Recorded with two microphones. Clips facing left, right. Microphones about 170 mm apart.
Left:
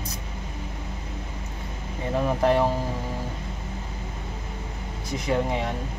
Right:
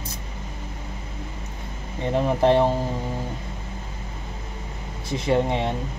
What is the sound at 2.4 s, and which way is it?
Speech, 25° right (ahead or behind).